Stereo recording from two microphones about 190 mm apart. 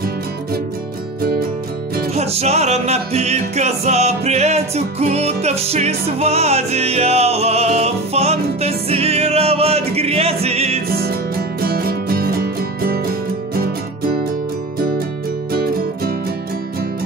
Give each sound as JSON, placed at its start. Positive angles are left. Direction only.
{"t": 2.1, "sound": "music", "side_deg": -35}
{"t": 10.9, "sound": "music", "side_deg": -55}
{"t": 15.5, "sound": "music", "side_deg": -50}